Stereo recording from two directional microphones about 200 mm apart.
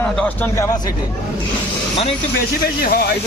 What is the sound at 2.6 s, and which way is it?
Speech, 50° left (ahead or behind).